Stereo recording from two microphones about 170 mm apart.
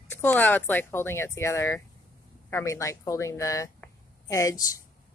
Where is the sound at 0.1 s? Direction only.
10° left (ahead or behind).